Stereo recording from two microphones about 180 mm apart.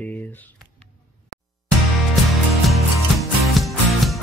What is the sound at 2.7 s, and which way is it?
Music, centre (ahead or behind).